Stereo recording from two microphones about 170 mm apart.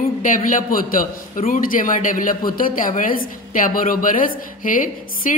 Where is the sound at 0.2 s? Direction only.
50° left (ahead or behind).